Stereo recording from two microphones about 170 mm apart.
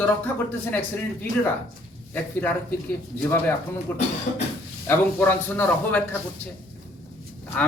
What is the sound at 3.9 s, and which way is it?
A man's voice, 15° left (ahead or behind).